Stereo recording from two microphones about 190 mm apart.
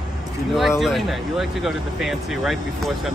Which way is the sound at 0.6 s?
Centre (ahead or behind).